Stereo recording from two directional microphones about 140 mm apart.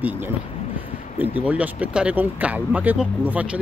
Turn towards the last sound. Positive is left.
turn(degrees=-10)  # may be behind; listen again after turning